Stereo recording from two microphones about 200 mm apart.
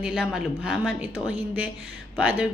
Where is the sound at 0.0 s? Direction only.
Centre (ahead or behind).